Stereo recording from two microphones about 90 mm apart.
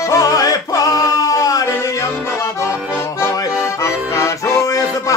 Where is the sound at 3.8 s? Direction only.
35° left (ahead or behind).